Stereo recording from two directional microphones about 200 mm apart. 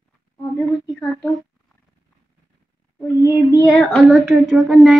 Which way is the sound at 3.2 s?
20° left (ahead or behind).